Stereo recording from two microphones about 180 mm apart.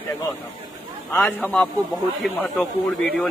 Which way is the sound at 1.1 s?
10° left (ahead or behind).